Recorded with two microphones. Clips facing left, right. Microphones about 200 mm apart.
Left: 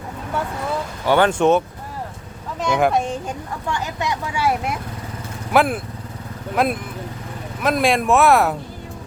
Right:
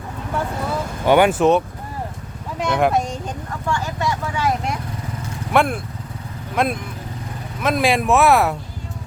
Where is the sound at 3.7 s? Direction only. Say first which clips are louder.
Right 2 dB; 20° left (ahead or behind); by 8.5 s centre (ahead or behind).